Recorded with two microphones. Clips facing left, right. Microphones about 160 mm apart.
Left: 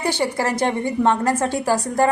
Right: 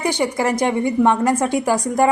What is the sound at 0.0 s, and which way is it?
A woman's voice, 15° right (ahead or behind).